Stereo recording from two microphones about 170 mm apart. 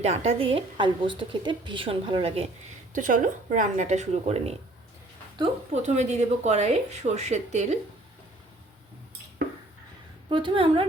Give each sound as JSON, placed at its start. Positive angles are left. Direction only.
{"t": 0.0, "sound": "a woman's voice", "side_deg": -40}
{"t": 2.9, "sound": "a woman's voice", "side_deg": -50}
{"t": 10.2, "sound": "a woman's voice", "side_deg": -30}